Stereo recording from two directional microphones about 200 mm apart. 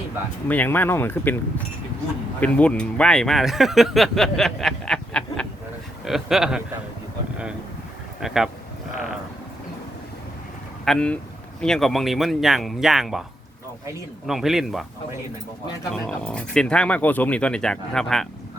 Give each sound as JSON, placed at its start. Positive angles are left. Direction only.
{"t": 0.4, "sound": "speech", "side_deg": 10}
{"t": 8.2, "sound": "speech", "side_deg": 0}
{"t": 10.8, "sound": "speech", "side_deg": 5}
{"t": 14.3, "sound": "speech", "side_deg": 0}
{"t": 15.9, "sound": "speech", "side_deg": 5}